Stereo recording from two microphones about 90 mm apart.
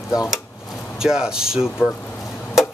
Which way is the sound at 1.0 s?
5° right (ahead or behind).